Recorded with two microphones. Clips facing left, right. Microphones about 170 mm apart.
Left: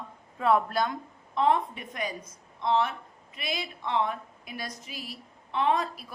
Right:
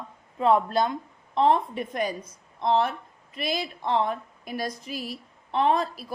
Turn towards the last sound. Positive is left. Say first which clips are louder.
# right 3 dB
turn(degrees=-35)  # may be behind; listen again after turning